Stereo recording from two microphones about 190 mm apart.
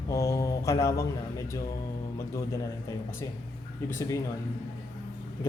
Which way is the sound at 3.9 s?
15° left (ahead or behind).